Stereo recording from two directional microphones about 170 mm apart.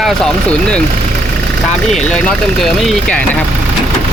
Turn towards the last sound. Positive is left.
turn(degrees=5)  # may be behind; listen again after turning